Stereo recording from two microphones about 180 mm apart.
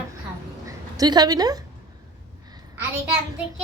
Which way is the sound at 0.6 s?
20° right (ahead or behind).